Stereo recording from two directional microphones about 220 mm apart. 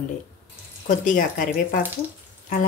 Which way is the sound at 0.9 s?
35° left (ahead or behind).